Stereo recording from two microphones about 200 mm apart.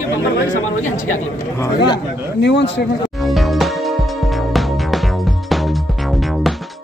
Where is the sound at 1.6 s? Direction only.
20° left (ahead or behind).